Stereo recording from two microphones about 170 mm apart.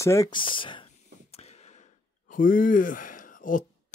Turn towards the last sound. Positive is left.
turn(degrees=50)  # may be behind; listen again after turning